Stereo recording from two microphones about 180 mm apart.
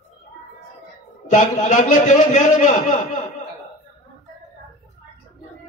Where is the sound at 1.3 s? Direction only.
45° left (ahead or behind).